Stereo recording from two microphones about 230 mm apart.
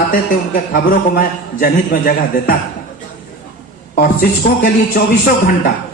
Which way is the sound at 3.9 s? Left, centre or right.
Left.